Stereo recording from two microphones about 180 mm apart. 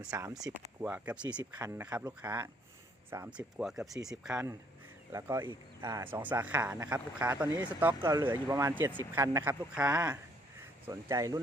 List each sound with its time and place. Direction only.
0.0 s speech: 20° right (ahead or behind)
1.2 s speech: 25° right (ahead or behind)
1.6 s speech: 10° right (ahead or behind)
5.1 s speech: 15° right (ahead or behind)
10.8 s speech: 20° right (ahead or behind)